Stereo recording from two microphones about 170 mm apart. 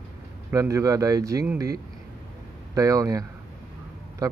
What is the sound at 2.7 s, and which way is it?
Speech, 20° right (ahead or behind).